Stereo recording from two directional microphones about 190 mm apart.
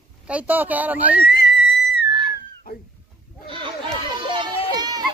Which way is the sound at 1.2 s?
55° left (ahead or behind).